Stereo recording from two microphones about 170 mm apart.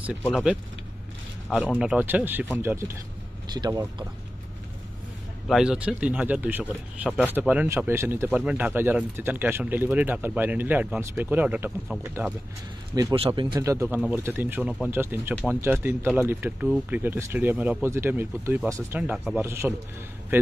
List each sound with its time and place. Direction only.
0.2 s speech: 5° right (ahead or behind)
3.5 s speech: 25° right (ahead or behind)
5.5 s speech: 5° right (ahead or behind)
12.9 s speech: 20° right (ahead or behind)
13.7 s speech: 15° right (ahead or behind)